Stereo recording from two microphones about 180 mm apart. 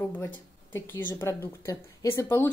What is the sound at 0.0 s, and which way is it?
Speech, 20° left (ahead or behind).